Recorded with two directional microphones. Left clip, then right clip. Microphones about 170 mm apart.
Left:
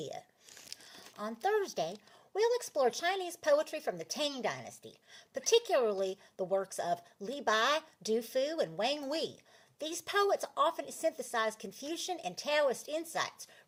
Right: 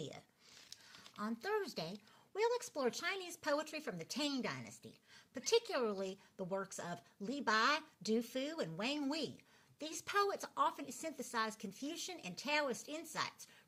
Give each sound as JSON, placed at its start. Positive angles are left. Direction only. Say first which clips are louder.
{"t": 1.2, "sound": "speech", "louder": "left 8 dB", "side_deg": -20}